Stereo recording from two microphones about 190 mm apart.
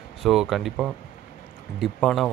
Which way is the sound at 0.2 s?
Centre (ahead or behind).